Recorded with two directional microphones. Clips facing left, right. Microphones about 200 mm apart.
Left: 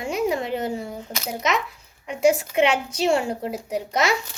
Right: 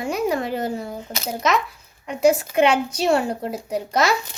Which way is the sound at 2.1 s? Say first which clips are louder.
Right 2 dB; 40° right (ahead or behind).